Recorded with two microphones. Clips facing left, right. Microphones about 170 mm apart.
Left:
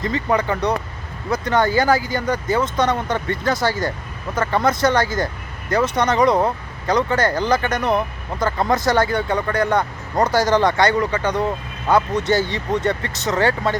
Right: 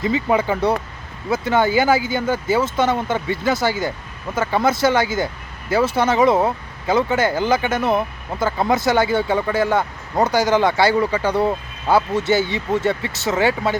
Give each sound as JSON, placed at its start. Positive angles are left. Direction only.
{"t": 0.0, "sound": "speech", "side_deg": -5}